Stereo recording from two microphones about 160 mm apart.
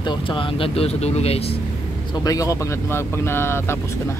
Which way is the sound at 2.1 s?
20° left (ahead or behind).